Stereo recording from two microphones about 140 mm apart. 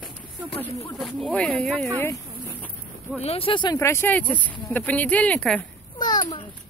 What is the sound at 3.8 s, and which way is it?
Speech, 15° left (ahead or behind).